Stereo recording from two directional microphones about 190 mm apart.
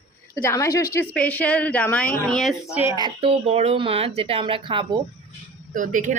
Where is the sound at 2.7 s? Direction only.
15° right (ahead or behind).